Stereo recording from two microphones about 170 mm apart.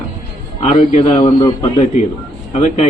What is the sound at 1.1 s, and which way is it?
Speech, 30° left (ahead or behind).